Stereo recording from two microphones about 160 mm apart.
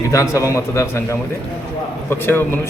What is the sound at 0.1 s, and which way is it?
Speech, 20° left (ahead or behind).